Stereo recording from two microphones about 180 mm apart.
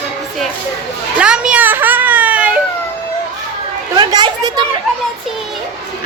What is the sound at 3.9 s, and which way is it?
Speech, 20° right (ahead or behind).